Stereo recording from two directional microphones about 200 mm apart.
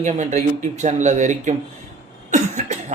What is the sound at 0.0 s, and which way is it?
A man's voice, 35° right (ahead or behind).